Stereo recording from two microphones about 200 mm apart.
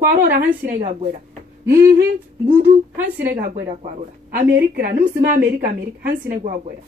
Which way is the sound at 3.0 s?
45° right (ahead or behind).